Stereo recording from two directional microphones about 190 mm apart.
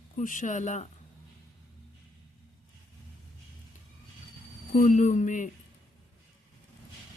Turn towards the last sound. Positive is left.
turn(degrees=40)  # may be behind; listen again after turning